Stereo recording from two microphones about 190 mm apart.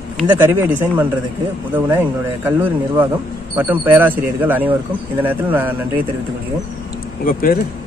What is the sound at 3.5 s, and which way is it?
Speech, 10° right (ahead or behind).